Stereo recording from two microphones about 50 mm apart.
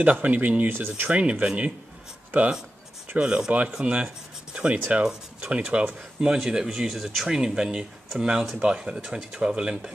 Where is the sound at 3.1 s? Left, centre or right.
Centre.